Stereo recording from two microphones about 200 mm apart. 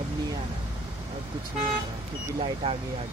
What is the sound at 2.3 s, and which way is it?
Speech, 30° right (ahead or behind).